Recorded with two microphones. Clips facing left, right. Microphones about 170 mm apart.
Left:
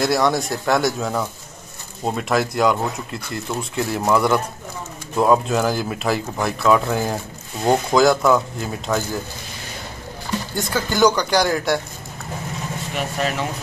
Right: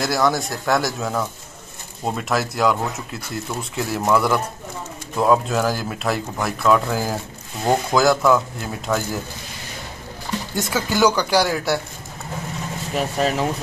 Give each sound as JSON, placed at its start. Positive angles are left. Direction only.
{"t": 0.0, "sound": "speech", "side_deg": 0}
{"t": 10.5, "sound": "speech", "side_deg": -5}
{"t": 12.9, "sound": "speech", "side_deg": -35}